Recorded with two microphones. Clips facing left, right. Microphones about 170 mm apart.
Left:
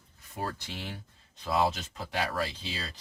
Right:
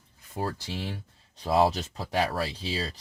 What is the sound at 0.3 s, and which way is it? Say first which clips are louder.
Speech: right 4 dB; 30° right (ahead or behind).